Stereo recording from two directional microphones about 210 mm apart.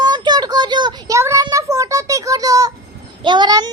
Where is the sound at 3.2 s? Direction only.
20° right (ahead or behind).